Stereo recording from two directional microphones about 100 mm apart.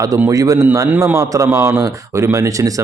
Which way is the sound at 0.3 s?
35° right (ahead or behind).